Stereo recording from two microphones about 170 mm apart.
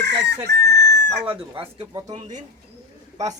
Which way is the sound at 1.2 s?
30° right (ahead or behind).